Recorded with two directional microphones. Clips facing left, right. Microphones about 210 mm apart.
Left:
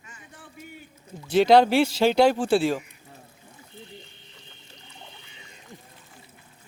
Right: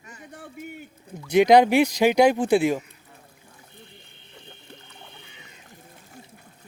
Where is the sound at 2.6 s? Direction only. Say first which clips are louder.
Right 2 dB; 20° right (ahead or behind).